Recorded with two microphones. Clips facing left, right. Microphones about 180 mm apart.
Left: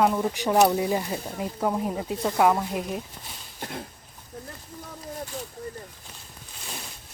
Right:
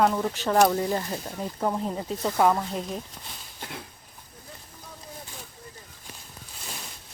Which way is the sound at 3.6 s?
45° left (ahead or behind).